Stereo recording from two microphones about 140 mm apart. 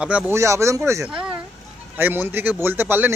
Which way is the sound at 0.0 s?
10° right (ahead or behind).